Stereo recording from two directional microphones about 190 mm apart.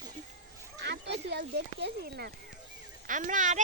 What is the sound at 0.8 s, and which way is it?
Speech, 60° right (ahead or behind).